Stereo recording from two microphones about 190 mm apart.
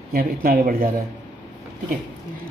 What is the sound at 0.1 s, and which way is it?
Speech, 50° right (ahead or behind).